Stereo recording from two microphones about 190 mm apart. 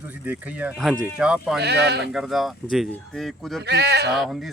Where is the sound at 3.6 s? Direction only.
60° right (ahead or behind).